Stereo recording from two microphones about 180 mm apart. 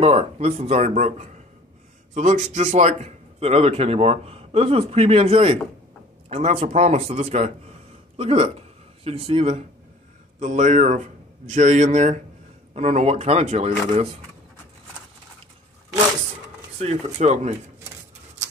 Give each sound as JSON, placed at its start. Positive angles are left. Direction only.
{"t": 0.0, "sound": "a man's voice", "side_deg": -35}
{"t": 16.8, "sound": "a man's voice", "side_deg": -40}